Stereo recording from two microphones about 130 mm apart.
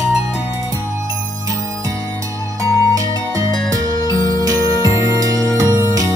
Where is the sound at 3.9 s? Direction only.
30° left (ahead or behind).